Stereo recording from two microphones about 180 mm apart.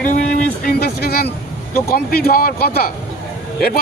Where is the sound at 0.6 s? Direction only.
55° left (ahead or behind).